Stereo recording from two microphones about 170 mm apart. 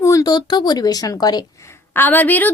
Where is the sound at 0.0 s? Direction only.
20° left (ahead or behind).